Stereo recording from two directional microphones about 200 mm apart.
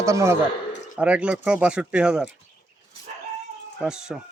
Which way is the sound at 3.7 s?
5° right (ahead or behind).